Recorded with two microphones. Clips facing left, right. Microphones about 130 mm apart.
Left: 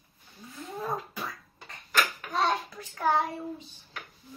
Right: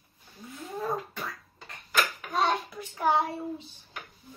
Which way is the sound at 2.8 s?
15° right (ahead or behind).